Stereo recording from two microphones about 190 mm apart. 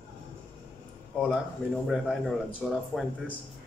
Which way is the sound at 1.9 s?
Centre (ahead or behind).